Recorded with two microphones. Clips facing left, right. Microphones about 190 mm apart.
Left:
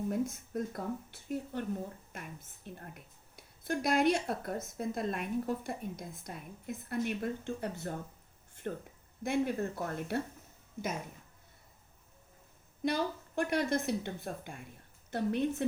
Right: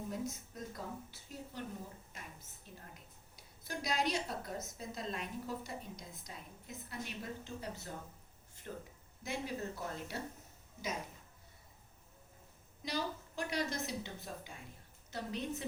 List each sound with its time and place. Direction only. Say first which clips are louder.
0.1 s speech: left 8 dB; 55° left (ahead or behind)
2.6 s speech: left 8 dB; 60° left (ahead or behind)
12.8 s speech: left 7 dB; 55° left (ahead or behind)